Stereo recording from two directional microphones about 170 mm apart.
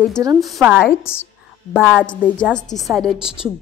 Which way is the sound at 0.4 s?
Centre (ahead or behind).